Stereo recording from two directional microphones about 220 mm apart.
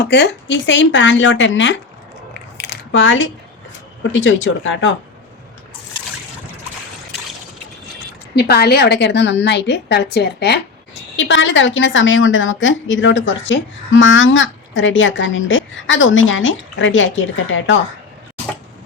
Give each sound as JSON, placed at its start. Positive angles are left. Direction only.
{"t": 0.0, "sound": "a woman's voice", "side_deg": 50}
{"t": 2.6, "sound": "a sound", "side_deg": 55}
{"t": 4.1, "sound": "a woman's voice", "side_deg": 60}
{"t": 8.4, "sound": "a woman's voice", "side_deg": 45}